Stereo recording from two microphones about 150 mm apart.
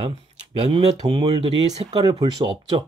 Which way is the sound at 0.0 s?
40° right (ahead or behind).